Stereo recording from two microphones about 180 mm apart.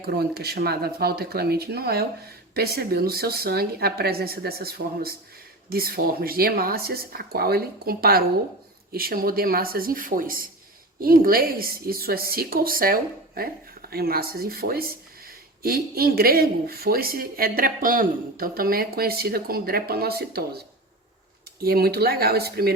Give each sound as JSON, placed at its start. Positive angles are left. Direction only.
{"t": 0.0, "sound": "speech", "side_deg": -60}
{"t": 21.6, "sound": "speech", "side_deg": -60}